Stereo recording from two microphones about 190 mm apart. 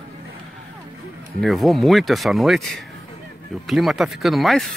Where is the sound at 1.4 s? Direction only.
Centre (ahead or behind).